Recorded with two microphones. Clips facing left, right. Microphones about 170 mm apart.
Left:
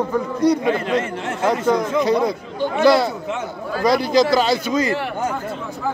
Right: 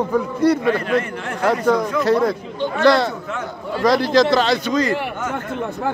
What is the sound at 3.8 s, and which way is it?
Speech, centre (ahead or behind).